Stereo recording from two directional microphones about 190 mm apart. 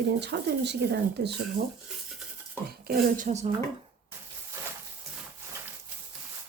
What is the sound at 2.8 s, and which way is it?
Speech, 55° right (ahead or behind).